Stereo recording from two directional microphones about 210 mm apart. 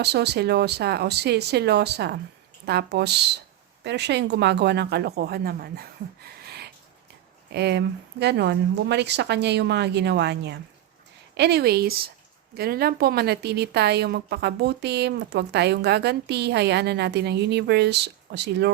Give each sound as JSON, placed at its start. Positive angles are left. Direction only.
{"t": 0.0, "sound": "a woman's voice", "side_deg": -50}